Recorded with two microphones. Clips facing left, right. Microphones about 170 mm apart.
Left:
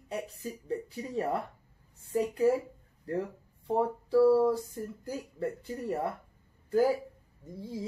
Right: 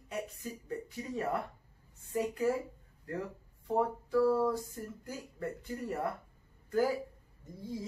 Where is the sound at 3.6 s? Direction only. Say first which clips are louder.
Left 2 dB; 30° left (ahead or behind).